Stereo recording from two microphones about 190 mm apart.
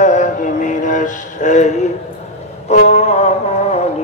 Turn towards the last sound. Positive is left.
turn(degrees=35)  # may be behind; listen again after turning